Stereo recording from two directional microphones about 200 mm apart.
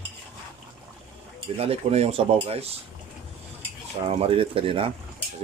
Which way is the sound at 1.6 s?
30° right (ahead or behind).